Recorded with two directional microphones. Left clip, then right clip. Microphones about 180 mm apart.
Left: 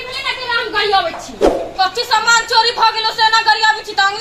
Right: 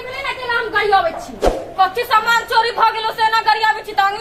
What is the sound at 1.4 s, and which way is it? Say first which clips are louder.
Speech: left 4 dB; centre (ahead or behind).